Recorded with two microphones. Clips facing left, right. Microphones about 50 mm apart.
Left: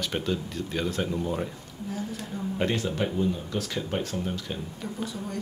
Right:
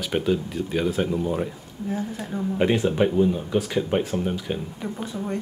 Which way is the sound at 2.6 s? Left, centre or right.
Centre.